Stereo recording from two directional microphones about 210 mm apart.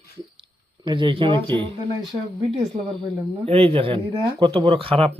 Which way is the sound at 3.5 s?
25° right (ahead or behind).